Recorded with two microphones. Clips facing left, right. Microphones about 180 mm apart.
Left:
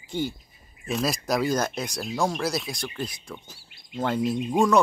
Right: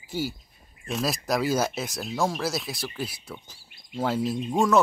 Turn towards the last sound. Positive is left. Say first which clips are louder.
# left 1 dB
turn(degrees=0)  # may be behind; listen again after turning